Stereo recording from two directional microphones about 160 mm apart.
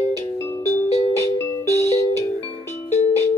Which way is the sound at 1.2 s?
15° left (ahead or behind).